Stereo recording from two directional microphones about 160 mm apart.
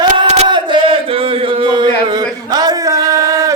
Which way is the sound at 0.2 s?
35° right (ahead or behind).